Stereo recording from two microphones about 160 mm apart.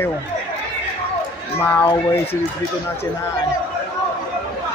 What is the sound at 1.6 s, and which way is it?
Speech, 10° left (ahead or behind).